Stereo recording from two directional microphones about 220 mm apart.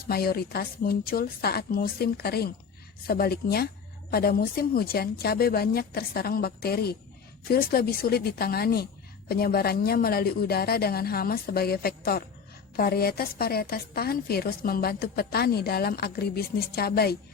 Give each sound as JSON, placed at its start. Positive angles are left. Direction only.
{"t": 0.1, "sound": "a woman's voice", "side_deg": 45}